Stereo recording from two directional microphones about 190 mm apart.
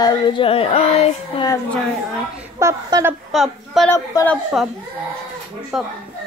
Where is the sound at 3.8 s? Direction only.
15° left (ahead or behind).